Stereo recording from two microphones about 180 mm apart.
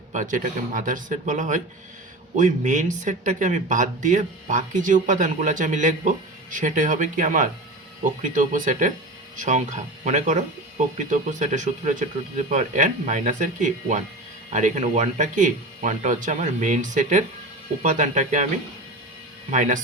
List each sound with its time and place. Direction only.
0.1 s speech: 45° right (ahead or behind)
19.5 s speech: 40° right (ahead or behind)